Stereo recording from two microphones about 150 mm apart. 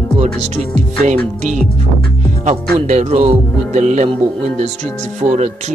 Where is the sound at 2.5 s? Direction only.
50° right (ahead or behind).